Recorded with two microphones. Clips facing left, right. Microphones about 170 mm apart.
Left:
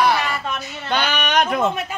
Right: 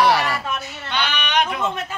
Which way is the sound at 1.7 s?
10° left (ahead or behind).